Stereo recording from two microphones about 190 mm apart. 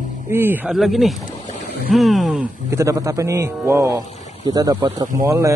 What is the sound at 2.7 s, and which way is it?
A man's voice, 15° right (ahead or behind).